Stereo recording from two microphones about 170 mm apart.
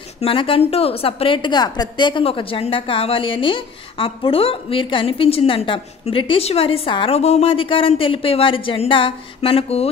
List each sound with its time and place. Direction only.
0.2 s a woman's voice: 30° left (ahead or behind)